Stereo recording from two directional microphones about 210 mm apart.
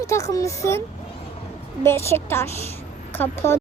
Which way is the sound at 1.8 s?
10° left (ahead or behind).